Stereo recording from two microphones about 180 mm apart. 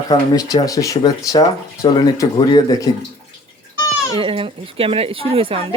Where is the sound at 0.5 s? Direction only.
20° left (ahead or behind).